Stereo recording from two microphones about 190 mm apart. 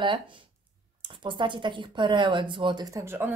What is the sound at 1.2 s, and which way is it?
Speech, 25° right (ahead or behind).